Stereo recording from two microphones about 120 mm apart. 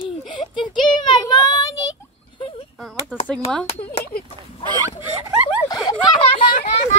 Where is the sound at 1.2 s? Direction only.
30° left (ahead or behind).